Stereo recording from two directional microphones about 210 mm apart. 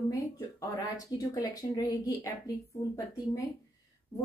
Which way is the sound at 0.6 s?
15° left (ahead or behind).